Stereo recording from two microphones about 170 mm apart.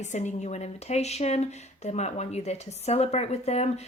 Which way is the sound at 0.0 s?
45° left (ahead or behind).